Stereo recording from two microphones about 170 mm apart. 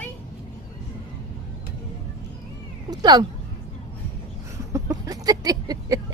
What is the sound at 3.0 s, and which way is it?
Speech, 25° right (ahead or behind).